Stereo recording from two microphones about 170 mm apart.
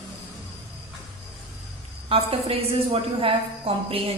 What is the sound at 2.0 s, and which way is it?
A woman's voice, 35° right (ahead or behind).